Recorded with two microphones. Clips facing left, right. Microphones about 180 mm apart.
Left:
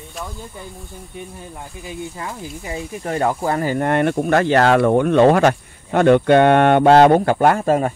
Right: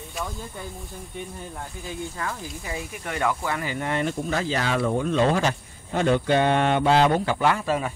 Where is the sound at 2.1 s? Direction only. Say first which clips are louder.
Left 2 dB; 20° left (ahead or behind).